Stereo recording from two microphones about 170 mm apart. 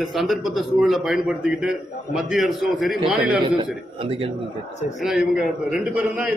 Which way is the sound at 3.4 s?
30° right (ahead or behind).